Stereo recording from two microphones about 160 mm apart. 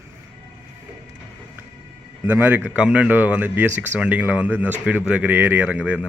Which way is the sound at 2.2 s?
10° right (ahead or behind).